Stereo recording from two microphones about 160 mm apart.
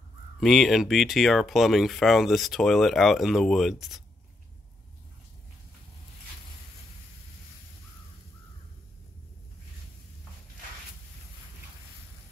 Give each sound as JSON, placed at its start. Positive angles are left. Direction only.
{"t": 0.4, "sound": "speech", "side_deg": 0}